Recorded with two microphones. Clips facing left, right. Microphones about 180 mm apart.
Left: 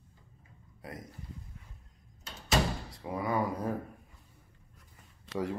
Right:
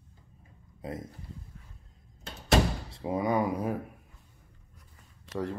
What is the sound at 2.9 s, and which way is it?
Speech, 20° right (ahead or behind).